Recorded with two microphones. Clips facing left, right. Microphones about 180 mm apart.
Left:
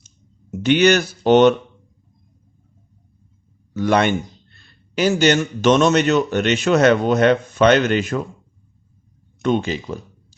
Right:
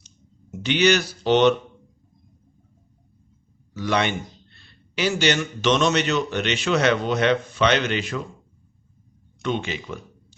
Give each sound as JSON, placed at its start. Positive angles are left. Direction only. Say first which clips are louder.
{"t": 0.6, "sound": "a man's voice", "louder": "left 5 dB", "side_deg": 50}
{"t": 3.8, "sound": "a man's voice", "louder": "left 6 dB", "side_deg": 50}
{"t": 9.4, "sound": "speech", "louder": "left 7 dB", "side_deg": 40}